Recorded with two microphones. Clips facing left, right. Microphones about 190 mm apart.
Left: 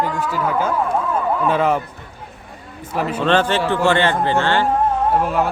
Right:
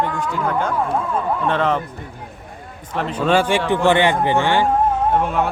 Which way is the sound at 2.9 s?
5° left (ahead or behind).